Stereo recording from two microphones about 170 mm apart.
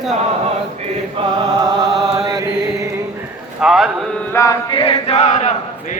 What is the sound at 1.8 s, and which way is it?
Chant, centre (ahead or behind).